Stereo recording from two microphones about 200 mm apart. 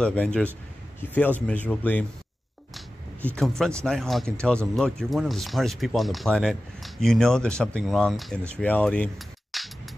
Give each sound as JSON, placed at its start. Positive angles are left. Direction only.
{"t": 0.0, "sound": "speech", "side_deg": 5}
{"t": 3.3, "sound": "speech", "side_deg": 0}